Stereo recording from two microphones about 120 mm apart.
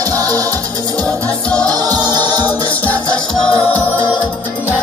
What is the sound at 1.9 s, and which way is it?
Music, 35° right (ahead or behind).